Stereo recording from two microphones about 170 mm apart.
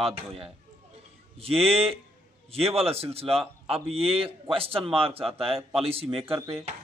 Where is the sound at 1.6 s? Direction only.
35° right (ahead or behind).